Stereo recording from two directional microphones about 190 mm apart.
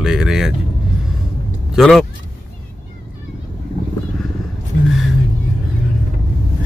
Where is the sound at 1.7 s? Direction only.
Centre (ahead or behind).